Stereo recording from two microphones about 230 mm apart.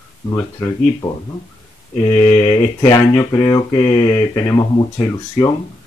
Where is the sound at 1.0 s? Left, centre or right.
Centre.